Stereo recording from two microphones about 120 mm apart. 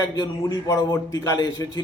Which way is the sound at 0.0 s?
30° left (ahead or behind).